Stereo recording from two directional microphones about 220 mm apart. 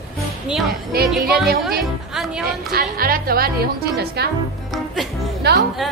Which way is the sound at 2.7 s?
40° right (ahead or behind).